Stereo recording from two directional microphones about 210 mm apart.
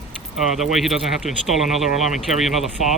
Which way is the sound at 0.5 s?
Centre (ahead or behind).